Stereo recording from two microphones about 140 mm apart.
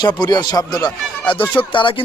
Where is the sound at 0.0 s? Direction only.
30° left (ahead or behind).